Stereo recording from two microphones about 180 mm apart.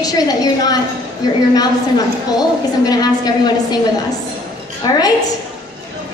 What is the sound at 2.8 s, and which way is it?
Speech, 20° left (ahead or behind).